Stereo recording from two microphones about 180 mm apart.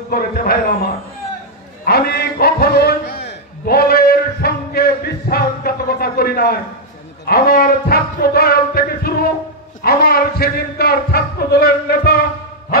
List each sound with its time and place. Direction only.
0.1 s a man's voice: 55° left (ahead or behind)
1.9 s a sound: 60° left (ahead or behind)
7.2 s a man's voice: 60° left (ahead or behind)